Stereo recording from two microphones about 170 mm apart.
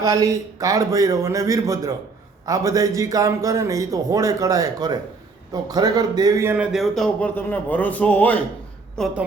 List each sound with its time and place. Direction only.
0.0 s a man's voice: 20° right (ahead or behind); by 9.1 s 5° left (ahead or behind)